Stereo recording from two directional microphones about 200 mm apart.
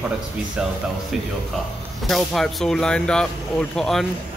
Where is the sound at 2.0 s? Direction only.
Centre (ahead or behind).